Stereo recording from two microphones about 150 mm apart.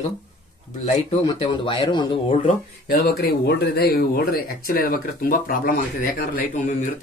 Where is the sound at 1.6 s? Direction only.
35° left (ahead or behind).